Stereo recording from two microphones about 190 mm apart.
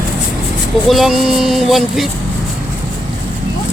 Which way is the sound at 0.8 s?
Centre (ahead or behind).